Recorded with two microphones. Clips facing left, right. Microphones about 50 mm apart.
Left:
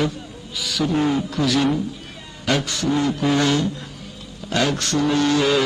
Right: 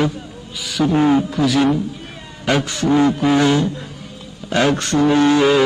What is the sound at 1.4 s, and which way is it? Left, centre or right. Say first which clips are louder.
Speech: right 4 dB; centre.